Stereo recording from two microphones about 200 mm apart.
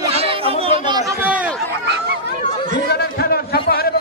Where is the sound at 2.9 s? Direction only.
50° left (ahead or behind).